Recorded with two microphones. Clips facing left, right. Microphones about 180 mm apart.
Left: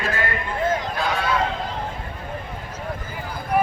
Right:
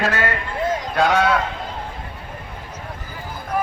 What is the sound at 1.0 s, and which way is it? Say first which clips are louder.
Honk: right 6 dB; 75° right (ahead or behind).